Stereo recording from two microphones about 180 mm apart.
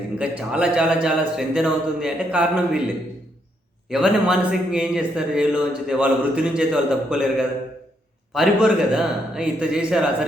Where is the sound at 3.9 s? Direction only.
5° right (ahead or behind).